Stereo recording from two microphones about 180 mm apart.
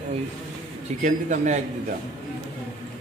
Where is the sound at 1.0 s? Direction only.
40° right (ahead or behind).